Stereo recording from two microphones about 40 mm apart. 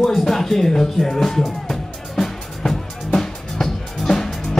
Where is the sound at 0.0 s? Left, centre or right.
Centre.